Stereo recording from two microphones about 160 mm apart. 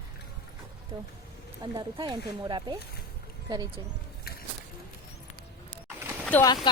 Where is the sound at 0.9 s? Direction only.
25° right (ahead or behind).